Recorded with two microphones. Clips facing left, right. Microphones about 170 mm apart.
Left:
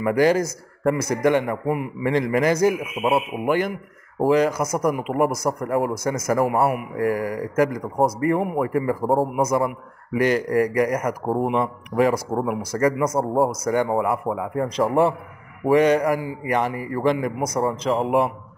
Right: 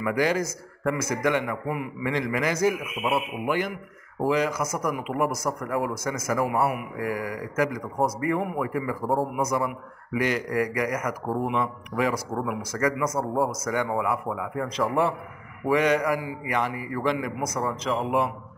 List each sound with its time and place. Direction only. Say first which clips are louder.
0.0 s speech: left 6 dB; 40° left (ahead or behind)